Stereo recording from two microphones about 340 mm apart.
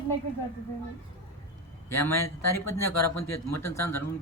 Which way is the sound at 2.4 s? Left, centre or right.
Left.